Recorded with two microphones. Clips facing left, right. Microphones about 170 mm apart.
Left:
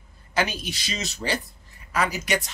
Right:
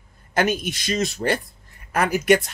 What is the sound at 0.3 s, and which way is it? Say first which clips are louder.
Speech: right 5 dB; 50° right (ahead or behind).